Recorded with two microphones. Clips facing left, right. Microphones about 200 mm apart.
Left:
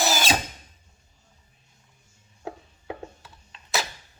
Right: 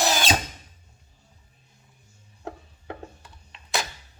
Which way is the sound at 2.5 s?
5° left (ahead or behind).